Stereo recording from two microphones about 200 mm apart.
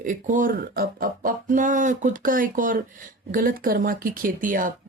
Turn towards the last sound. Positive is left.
turn(degrees=-45)  # may be behind; listen again after turning